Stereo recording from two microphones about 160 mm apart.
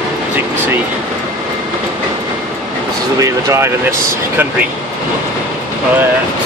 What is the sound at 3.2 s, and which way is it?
Speech, 15° right (ahead or behind).